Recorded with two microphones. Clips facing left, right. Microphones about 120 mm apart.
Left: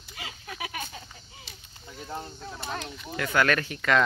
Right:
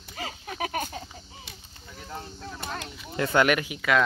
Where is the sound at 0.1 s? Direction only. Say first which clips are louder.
Right 5 dB; 40° right (ahead or behind).